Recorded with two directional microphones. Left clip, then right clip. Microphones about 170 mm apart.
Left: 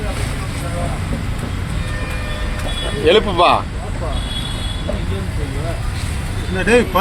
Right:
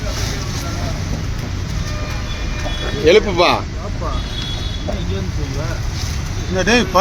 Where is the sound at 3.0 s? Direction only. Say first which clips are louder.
Even; 30° right (ahead or behind).